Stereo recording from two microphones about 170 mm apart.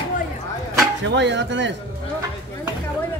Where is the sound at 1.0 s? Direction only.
90° right.